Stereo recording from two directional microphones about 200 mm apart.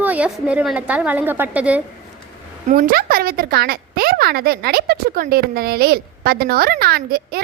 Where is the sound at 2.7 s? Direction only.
45° right (ahead or behind).